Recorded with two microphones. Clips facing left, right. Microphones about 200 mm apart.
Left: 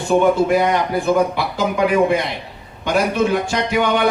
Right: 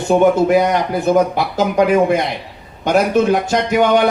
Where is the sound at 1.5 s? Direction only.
45° right (ahead or behind).